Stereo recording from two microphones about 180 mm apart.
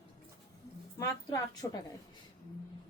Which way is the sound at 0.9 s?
20° left (ahead or behind).